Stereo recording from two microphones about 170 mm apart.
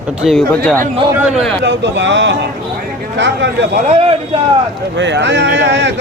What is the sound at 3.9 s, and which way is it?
Speech, 35° right (ahead or behind).